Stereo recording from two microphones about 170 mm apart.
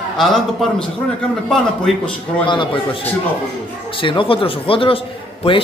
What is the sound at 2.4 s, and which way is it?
A man's voice, 30° left (ahead or behind).